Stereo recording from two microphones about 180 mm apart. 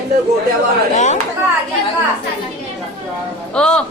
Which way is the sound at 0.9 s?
40° left (ahead or behind).